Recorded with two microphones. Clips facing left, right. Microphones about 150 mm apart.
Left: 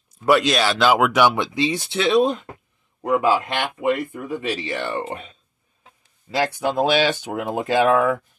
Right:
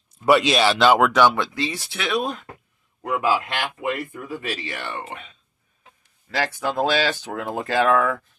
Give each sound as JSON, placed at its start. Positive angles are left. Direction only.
{"t": 0.2, "sound": "speech", "side_deg": 0}
{"t": 1.2, "sound": "speech", "side_deg": 15}
{"t": 6.3, "sound": "speech", "side_deg": 20}